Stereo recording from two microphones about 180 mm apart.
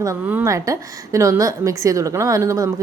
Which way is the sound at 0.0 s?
15° right (ahead or behind).